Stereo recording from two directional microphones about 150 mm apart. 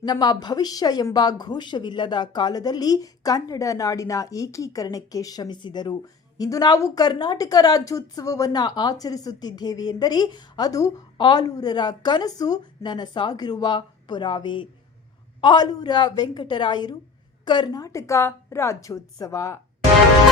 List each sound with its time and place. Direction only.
0.0 s a woman's voice: 30° left (ahead or behind)